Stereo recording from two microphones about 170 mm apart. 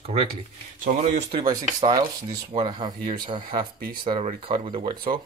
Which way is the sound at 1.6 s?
25° right (ahead or behind).